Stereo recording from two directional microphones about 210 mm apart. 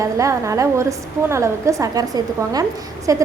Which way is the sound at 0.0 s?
15° right (ahead or behind).